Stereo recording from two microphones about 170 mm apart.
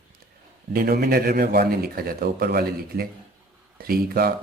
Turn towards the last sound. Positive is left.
turn(degrees=-60)  # may be behind; listen again after turning